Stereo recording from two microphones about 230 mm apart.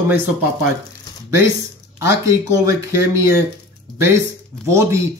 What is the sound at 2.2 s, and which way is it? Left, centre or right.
Speech, centre.